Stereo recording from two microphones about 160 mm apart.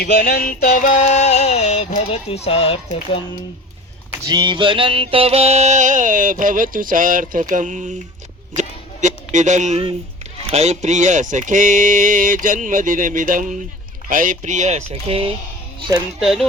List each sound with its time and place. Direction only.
0.0 s music: 75° left (ahead or behind); by 1.9 s 40° left (ahead or behind)
2.0 s speech: 40° left (ahead or behind)
4.3 s music: 30° right (ahead or behind); by 7.9 s 50° right (ahead or behind)
8.5 s speech: 50° right (ahead or behind)
10.5 s music: 45° right (ahead or behind)
16.2 s speech: centre (ahead or behind)